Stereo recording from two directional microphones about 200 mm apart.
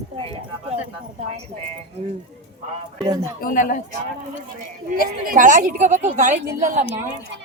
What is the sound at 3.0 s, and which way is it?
Speech, 15° right (ahead or behind).